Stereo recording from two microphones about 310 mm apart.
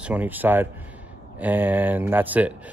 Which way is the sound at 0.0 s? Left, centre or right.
Centre.